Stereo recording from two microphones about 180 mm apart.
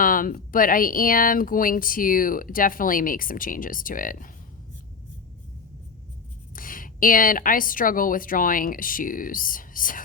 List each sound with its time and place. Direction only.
0.0 s speech: 50° left (ahead or behind)
6.6 s speech: 50° left (ahead or behind)